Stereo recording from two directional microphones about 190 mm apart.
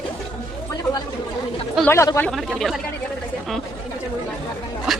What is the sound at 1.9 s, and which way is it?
Speech, 15° left (ahead or behind).